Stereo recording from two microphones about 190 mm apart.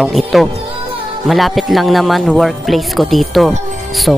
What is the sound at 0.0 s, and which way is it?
A man's voice, centre (ahead or behind).